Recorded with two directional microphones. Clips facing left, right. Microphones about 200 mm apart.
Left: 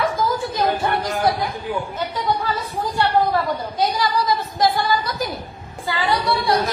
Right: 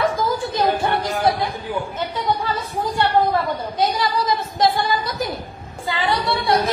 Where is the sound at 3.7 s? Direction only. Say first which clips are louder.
Even; 25° right (ahead or behind).